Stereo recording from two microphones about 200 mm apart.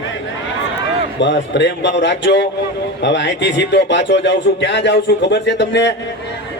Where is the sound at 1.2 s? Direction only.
60° left (ahead or behind).